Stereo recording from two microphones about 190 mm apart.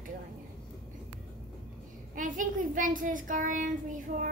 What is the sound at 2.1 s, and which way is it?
A child's voice, 45° right (ahead or behind).